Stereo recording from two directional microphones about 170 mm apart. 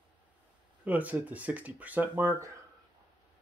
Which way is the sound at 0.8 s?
10° right (ahead or behind).